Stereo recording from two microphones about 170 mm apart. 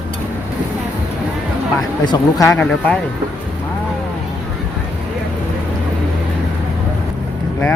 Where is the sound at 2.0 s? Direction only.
25° left (ahead or behind).